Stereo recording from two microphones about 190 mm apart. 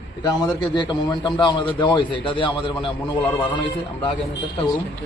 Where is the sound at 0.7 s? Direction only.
20° left (ahead or behind).